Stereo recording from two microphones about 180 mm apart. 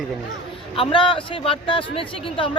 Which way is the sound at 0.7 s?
30° left (ahead or behind).